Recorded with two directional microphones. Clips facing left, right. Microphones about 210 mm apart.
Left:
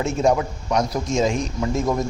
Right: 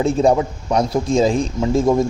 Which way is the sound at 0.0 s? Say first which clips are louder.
Right 4 dB; 30° right (ahead or behind).